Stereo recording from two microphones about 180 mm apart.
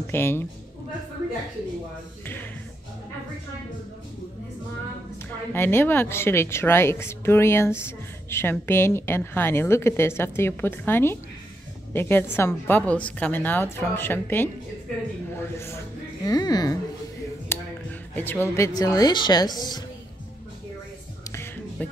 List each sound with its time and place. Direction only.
0.0 s a woman's voice: 10° left (ahead or behind)
5.5 s a woman's voice: 10° left (ahead or behind)
17.5 s a sound: 15° left (ahead or behind)
18.1 s a woman's voice: 10° left (ahead or behind)